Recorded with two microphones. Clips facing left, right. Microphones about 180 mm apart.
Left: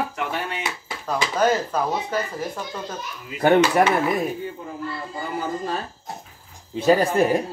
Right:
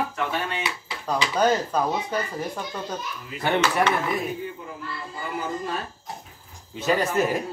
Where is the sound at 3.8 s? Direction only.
50° left (ahead or behind).